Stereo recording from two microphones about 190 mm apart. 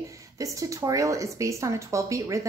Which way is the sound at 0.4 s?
15° right (ahead or behind).